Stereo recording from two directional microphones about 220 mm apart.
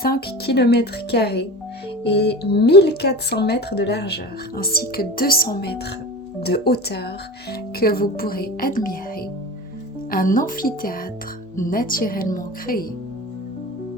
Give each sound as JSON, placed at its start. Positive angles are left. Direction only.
{"t": 0.0, "sound": "speech", "side_deg": 45}
{"t": 10.1, "sound": "speech", "side_deg": 40}